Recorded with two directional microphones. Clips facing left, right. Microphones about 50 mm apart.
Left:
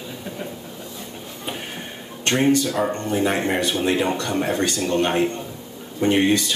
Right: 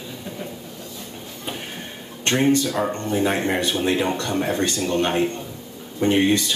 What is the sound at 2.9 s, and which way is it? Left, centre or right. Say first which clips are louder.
Speech: even; left.